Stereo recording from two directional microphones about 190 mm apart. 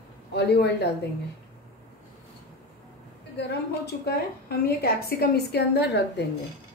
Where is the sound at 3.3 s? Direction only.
60° left (ahead or behind).